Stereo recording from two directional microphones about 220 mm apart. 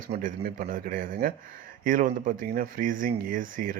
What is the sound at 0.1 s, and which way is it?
Speech, 40° right (ahead or behind).